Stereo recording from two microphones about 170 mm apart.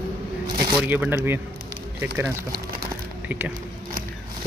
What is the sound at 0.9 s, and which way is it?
Speech, 10° right (ahead or behind).